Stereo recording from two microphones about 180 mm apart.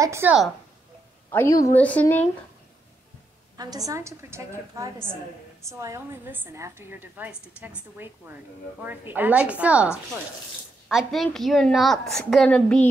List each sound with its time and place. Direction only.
0.0 s a woman's voice: 15° right (ahead or behind)
1.3 s a woman's voice: 15° left (ahead or behind)
3.5 s a woman's voice: 20° right (ahead or behind); by 12.8 s 5° left (ahead or behind)